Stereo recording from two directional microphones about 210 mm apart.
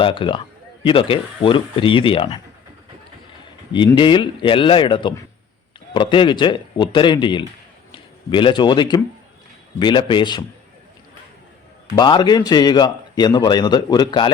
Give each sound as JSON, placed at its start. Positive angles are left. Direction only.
{"t": 0.0, "sound": "a man's voice", "side_deg": 25}
{"t": 3.7, "sound": "a man's voice", "side_deg": 25}
{"t": 11.9, "sound": "a man's voice", "side_deg": 20}